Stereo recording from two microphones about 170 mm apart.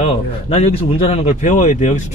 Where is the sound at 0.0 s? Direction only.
40° left (ahead or behind).